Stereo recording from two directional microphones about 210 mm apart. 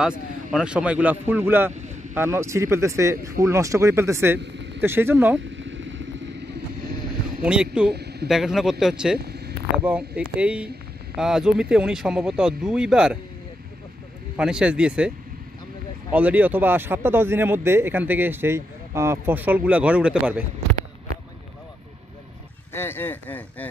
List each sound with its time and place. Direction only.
0.0 s speech: 5° right (ahead or behind)
5.6 s vehicle: 60° right (ahead or behind)
7.4 s speech: 5° right (ahead or behind)
7.9 s a man's voice: 50° right (ahead or behind)
8.3 s speech: centre (ahead or behind)
14.3 s speech: 5° right (ahead or behind)
22.7 s speech: 10° left (ahead or behind)